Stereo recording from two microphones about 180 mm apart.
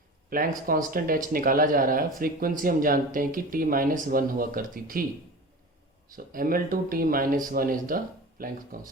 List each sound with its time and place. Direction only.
0.3 s speech: 50° right (ahead or behind)
6.1 s speech: 50° right (ahead or behind)